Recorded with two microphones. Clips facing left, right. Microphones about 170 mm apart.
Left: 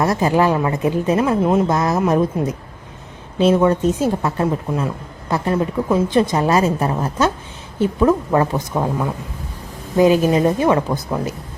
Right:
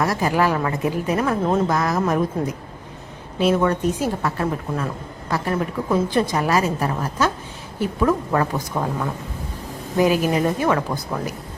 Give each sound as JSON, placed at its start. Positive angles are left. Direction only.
{"t": 0.0, "sound": "a woman's voice", "side_deg": 25}
{"t": 1.6, "sound": "a woman's voice", "side_deg": 25}
{"t": 10.0, "sound": "a woman's voice", "side_deg": 25}